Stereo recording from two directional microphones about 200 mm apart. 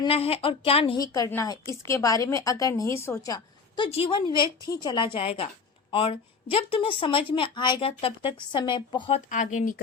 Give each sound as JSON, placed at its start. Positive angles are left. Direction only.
{"t": 0.0, "sound": "a woman's voice", "side_deg": 30}
{"t": 0.9, "sound": "a woman's voice", "side_deg": 20}